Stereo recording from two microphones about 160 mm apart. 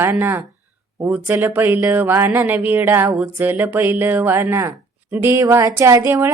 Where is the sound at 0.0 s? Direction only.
15° right (ahead or behind).